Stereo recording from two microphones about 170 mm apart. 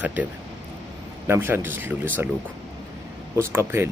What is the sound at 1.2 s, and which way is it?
Speech, 15° right (ahead or behind).